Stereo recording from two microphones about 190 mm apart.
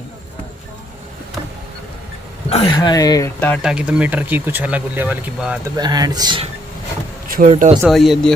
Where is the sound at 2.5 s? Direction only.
25° left (ahead or behind); by 3.6 s 10° left (ahead or behind).